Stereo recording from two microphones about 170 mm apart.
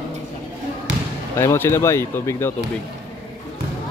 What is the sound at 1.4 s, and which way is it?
Speech, 15° left (ahead or behind).